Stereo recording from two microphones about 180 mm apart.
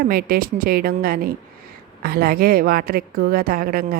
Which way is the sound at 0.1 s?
55° right (ahead or behind).